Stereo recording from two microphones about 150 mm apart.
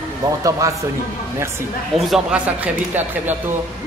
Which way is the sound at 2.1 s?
10° right (ahead or behind).